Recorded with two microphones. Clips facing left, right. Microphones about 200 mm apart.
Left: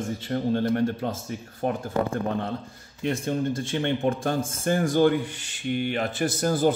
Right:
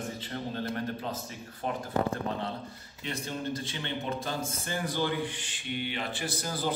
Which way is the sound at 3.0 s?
50° left (ahead or behind).